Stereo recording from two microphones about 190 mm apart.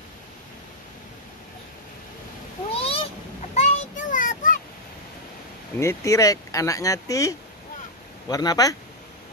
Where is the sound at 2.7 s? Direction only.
30° left (ahead or behind).